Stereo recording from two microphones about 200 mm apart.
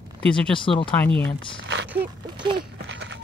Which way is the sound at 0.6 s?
25° left (ahead or behind).